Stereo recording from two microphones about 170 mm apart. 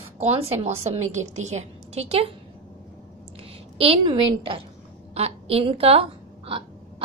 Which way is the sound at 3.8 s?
30° right (ahead or behind).